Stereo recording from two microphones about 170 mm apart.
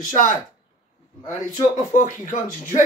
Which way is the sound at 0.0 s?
50° left (ahead or behind).